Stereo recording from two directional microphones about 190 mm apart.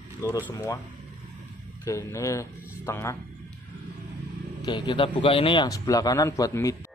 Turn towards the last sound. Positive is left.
turn(degrees=15)  # may be behind; listen again after turning